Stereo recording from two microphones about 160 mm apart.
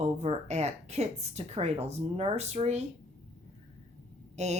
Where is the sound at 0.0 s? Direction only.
40° right (ahead or behind).